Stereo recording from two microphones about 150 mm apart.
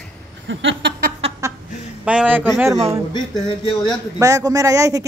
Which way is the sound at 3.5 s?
35° left (ahead or behind).